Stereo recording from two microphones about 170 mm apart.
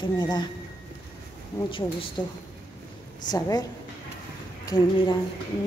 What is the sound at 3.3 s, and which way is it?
Speech, 20° left (ahead or behind).